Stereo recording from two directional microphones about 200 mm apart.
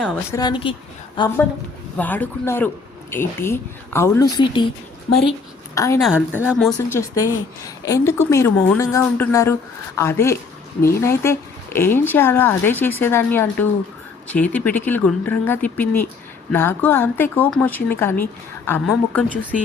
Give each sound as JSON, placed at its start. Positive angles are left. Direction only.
{"t": 0.0, "sound": "speech", "side_deg": 5}
{"t": 0.3, "sound": "a woman's voice", "side_deg": 20}
{"t": 2.0, "sound": "speech", "side_deg": 10}
{"t": 5.7, "sound": "a woman's voice", "side_deg": 15}
{"t": 6.0, "sound": "speech", "side_deg": -5}
{"t": 6.7, "sound": "speech", "side_deg": 15}